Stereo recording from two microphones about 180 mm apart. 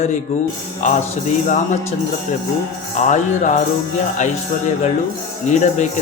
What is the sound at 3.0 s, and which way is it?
Speech, 45° left (ahead or behind).